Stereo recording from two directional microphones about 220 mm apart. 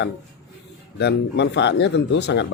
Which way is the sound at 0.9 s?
50° left (ahead or behind).